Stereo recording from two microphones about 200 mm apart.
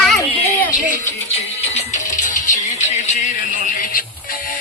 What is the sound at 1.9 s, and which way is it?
Music, 40° left (ahead or behind).